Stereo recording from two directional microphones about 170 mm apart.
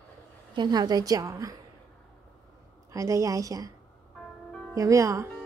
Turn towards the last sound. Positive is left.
turn(degrees=-20)  # may be behind; listen again after turning